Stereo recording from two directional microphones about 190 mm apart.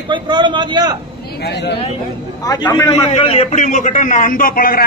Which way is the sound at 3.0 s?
35° left (ahead or behind).